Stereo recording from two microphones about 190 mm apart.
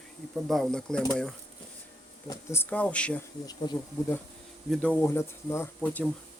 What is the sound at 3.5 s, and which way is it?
Speech, 20° left (ahead or behind).